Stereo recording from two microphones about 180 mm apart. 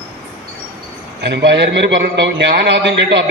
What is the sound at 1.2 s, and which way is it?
A man's voice, 70° right (ahead or behind).